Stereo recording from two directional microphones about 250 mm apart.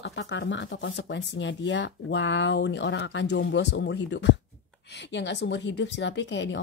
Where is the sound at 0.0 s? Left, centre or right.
Left.